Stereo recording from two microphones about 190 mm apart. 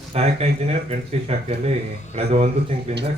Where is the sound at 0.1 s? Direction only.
35° right (ahead or behind).